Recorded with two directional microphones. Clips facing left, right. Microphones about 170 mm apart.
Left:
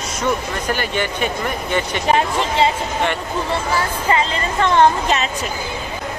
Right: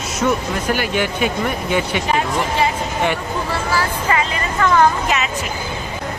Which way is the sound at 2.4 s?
25° left (ahead or behind).